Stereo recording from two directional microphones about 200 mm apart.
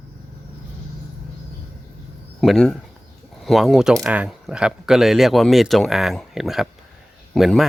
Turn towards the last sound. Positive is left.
turn(degrees=0)  # may be behind; listen again after turning